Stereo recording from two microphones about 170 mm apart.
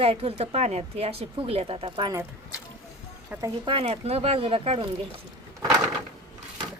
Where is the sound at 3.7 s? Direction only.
35° right (ahead or behind).